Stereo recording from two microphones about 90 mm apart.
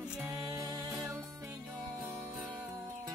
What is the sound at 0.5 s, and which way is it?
Music, 35° right (ahead or behind).